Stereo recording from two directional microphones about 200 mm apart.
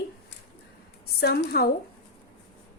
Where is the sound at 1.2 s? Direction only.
55° left (ahead or behind).